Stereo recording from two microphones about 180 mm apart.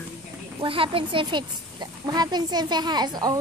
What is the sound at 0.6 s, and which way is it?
Speech, 30° right (ahead or behind).